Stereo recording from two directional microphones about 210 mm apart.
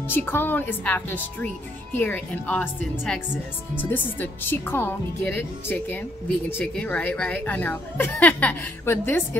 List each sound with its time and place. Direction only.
0.1 s speech: 10° left (ahead or behind)